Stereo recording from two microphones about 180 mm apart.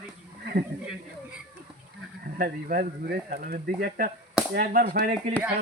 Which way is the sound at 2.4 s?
55° right (ahead or behind).